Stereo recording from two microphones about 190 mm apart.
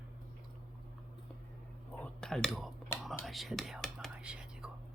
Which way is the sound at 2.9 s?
15° left (ahead or behind).